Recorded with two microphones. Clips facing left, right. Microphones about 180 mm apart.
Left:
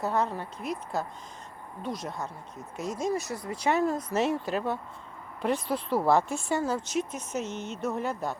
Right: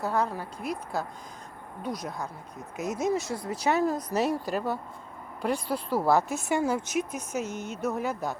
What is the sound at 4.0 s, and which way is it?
Speech, 40° right (ahead or behind).